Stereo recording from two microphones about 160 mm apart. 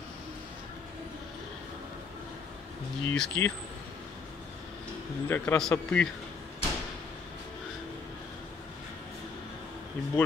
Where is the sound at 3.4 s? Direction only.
15° left (ahead or behind).